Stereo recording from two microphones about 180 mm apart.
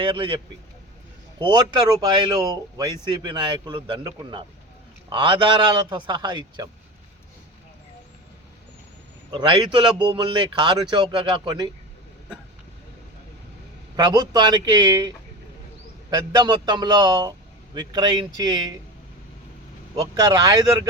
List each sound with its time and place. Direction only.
0.0 s speech: 25° right (ahead or behind)
9.3 s speech: 25° right (ahead or behind)
13.9 s speech: 20° right (ahead or behind)
20.0 s speech: 20° right (ahead or behind)